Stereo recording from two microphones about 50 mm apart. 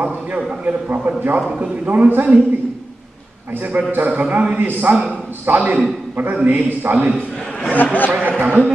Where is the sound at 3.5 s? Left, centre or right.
Right.